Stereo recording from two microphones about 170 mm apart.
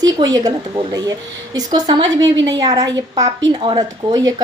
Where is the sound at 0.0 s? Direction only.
20° right (ahead or behind).